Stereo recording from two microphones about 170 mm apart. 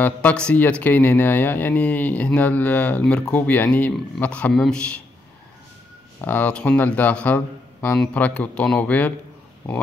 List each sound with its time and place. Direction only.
0.0 s speech: 10° left (ahead or behind)
6.2 s speech: 10° left (ahead or behind)